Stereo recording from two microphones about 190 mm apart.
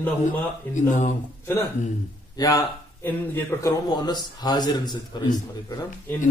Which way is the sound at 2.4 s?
20° left (ahead or behind).